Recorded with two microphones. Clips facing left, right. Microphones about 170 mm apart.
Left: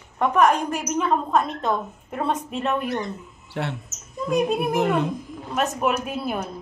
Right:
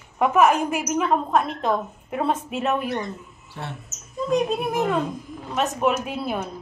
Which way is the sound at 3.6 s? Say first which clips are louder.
Left 7 dB; 90° left.